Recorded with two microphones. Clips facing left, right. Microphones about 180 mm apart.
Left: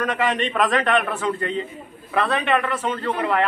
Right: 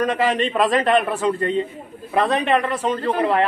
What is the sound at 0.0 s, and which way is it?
Speech, 35° right (ahead or behind).